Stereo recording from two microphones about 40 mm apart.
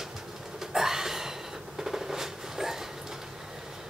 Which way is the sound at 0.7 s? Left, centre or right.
Centre.